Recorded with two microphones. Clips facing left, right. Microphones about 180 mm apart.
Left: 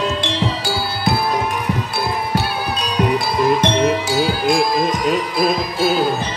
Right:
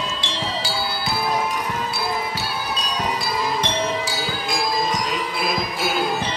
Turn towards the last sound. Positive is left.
turn(degrees=40)  # may be behind; listen again after turning